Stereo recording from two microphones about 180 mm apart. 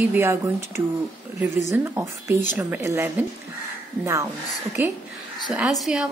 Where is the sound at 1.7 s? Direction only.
15° right (ahead or behind).